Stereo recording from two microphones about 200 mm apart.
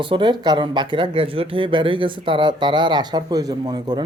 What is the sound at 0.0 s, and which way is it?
Speech, 25° right (ahead or behind).